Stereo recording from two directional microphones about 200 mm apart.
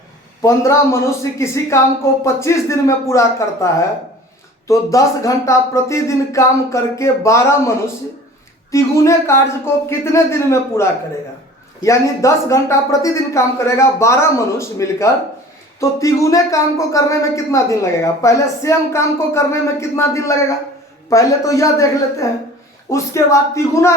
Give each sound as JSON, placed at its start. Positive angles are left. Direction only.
{"t": 0.4, "sound": "speech", "side_deg": 15}
{"t": 8.7, "sound": "speech", "side_deg": 15}